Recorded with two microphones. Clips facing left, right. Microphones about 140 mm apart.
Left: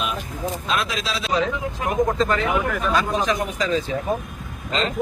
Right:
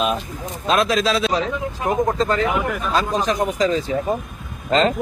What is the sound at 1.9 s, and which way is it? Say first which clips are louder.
A man's voice: right 1 dB; 30° right (ahead or behind).